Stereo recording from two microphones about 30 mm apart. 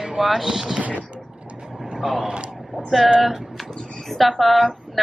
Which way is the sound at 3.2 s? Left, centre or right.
Centre.